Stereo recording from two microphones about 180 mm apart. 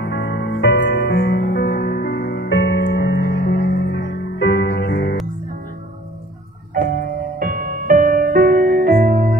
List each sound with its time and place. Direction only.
0.0 s music: 70° left (ahead or behind)
7.3 s music: 50° right (ahead or behind)